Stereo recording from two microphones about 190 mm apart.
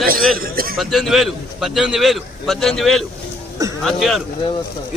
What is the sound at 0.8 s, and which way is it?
A man's voice, centre (ahead or behind).